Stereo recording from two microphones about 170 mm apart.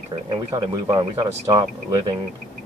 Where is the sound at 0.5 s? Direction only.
20° right (ahead or behind).